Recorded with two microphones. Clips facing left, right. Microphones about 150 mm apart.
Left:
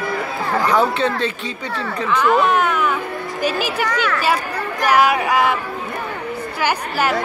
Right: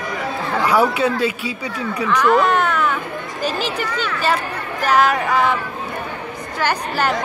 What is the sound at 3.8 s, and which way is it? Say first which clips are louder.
Speech: left 4 dB; 70° left (ahead or behind).